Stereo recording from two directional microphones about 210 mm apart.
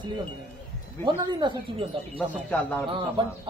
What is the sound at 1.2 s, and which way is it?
Speech, 20° right (ahead or behind).